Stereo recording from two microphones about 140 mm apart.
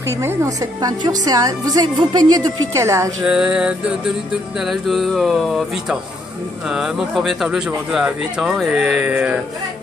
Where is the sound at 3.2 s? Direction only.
5° right (ahead or behind).